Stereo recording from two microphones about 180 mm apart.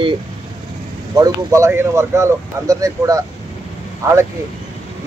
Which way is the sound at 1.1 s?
20° right (ahead or behind).